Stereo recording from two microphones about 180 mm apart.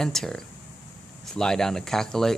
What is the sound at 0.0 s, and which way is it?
Speech, centre (ahead or behind).